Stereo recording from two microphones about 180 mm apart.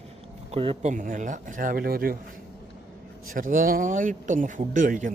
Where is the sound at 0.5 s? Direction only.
30° right (ahead or behind); by 2.1 s 55° right (ahead or behind).